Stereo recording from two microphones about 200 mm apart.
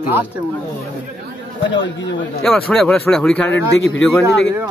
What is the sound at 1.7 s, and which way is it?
Speech, 65° left (ahead or behind).